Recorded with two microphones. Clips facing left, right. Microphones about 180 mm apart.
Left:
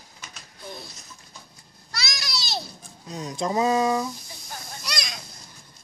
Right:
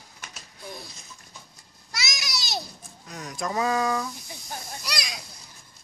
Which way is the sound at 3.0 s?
25° left (ahead or behind).